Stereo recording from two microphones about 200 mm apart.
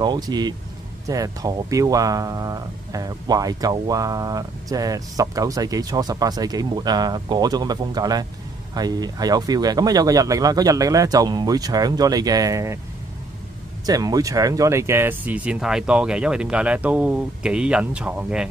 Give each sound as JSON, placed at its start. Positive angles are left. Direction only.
{"t": 0.0, "sound": "speech", "side_deg": -20}
{"t": 13.8, "sound": "speech", "side_deg": -20}